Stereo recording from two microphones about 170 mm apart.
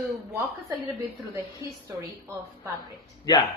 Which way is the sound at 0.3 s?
20° right (ahead or behind).